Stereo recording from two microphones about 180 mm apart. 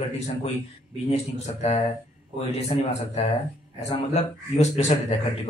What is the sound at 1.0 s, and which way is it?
A man's voice, 35° left (ahead or behind).